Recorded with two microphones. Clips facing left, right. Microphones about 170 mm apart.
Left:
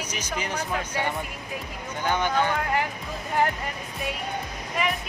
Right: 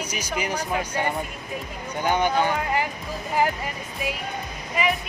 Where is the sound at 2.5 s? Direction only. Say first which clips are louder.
Right 1 dB; centre (ahead or behind).